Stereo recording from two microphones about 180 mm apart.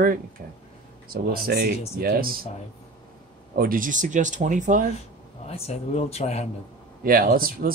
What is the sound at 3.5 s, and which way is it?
Speech, 55° right (ahead or behind).